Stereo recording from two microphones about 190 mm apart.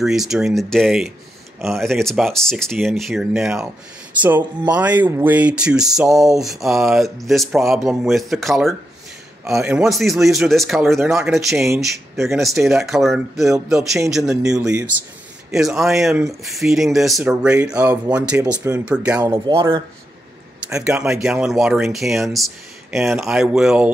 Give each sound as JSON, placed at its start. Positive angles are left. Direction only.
{"t": 0.0, "sound": "speech", "side_deg": 0}
{"t": 14.6, "sound": "speech", "side_deg": -20}
{"t": 15.5, "sound": "speech", "side_deg": 0}
{"t": 19.2, "sound": "speech", "side_deg": -15}
{"t": 20.7, "sound": "speech", "side_deg": -5}